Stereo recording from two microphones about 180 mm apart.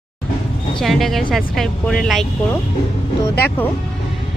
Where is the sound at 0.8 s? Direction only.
Centre (ahead or behind).